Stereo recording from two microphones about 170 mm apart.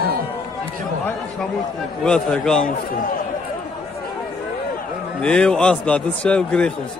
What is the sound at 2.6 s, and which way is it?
Speech, 55° left (ahead or behind).